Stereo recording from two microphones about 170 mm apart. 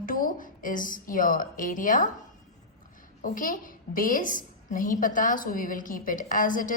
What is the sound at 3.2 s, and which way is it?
A woman's voice, 55° left (ahead or behind).